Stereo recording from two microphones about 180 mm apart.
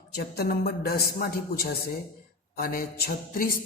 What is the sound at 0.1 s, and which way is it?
Speech, 60° left (ahead or behind).